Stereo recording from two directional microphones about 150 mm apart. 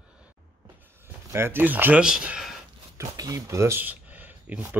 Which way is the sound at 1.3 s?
15° right (ahead or behind).